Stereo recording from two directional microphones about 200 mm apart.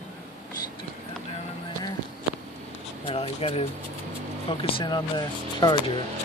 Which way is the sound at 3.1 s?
25° left (ahead or behind).